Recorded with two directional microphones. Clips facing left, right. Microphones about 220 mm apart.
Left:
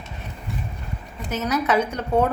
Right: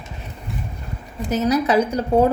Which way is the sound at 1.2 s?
35° right (ahead or behind).